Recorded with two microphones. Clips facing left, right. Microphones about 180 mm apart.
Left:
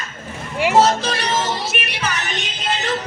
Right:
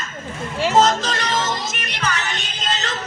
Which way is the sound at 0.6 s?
15° left (ahead or behind).